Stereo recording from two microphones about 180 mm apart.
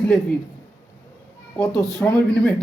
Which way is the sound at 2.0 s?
5° left (ahead or behind).